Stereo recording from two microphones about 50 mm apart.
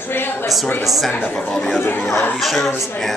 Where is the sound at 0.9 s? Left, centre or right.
Centre.